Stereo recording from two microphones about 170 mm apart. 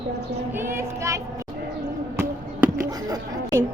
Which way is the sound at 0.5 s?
15° right (ahead or behind).